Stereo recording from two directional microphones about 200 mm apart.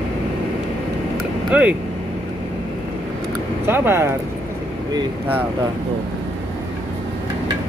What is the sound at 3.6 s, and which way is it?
Speech, 10° right (ahead or behind).